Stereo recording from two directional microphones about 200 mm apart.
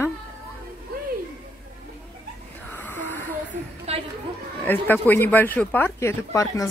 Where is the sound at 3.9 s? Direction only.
30° right (ahead or behind).